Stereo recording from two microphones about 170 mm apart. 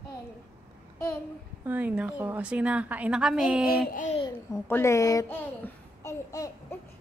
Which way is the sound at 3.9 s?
50° left (ahead or behind).